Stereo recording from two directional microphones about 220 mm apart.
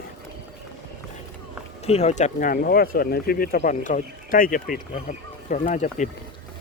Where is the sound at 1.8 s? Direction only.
30° left (ahead or behind).